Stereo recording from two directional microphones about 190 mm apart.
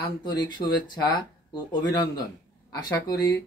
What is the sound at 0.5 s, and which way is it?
Speech, 25° left (ahead or behind).